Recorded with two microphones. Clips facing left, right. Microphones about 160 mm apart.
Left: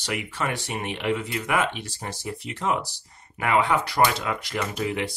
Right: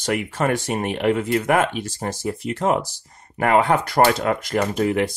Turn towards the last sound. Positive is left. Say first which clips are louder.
# right 7 dB
turn(degrees=-45)  # may be behind; listen again after turning